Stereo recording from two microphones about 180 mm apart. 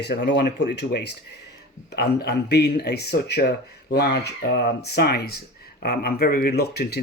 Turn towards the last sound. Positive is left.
turn(degrees=60)  # may be behind; listen again after turning